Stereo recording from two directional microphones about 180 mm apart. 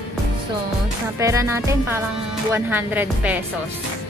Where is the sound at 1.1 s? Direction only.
15° right (ahead or behind).